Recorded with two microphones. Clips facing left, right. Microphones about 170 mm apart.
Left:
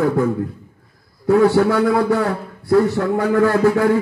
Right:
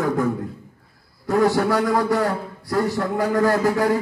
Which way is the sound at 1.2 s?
40° right (ahead or behind).